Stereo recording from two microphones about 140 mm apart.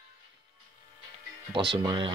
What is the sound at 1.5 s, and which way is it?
Speech, 35° right (ahead or behind).